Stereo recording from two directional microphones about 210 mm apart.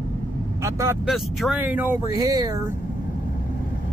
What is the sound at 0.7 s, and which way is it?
Speech, 15° right (ahead or behind).